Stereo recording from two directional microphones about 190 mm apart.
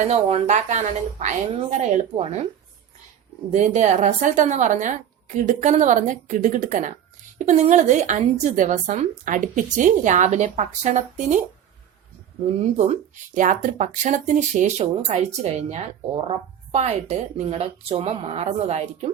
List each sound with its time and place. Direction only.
0.0 s a woman's voice: 35° right (ahead or behind)
3.5 s a woman's voice: 40° right (ahead or behind)
12.7 s a woman's voice: 35° right (ahead or behind)